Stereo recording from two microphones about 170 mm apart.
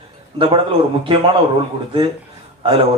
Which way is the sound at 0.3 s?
30° right (ahead or behind).